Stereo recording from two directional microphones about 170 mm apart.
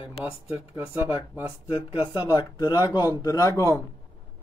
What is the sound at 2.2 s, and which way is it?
Speech, 25° left (ahead or behind).